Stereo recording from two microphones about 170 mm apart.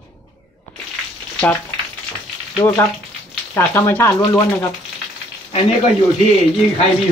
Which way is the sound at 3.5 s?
15° left (ahead or behind).